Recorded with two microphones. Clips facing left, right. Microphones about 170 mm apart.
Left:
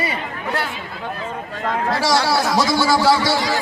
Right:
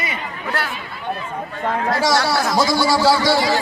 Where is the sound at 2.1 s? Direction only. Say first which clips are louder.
Left 2 dB; 20° left (ahead or behind).